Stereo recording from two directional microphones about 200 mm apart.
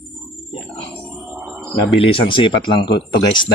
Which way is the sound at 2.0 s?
25° left (ahead or behind).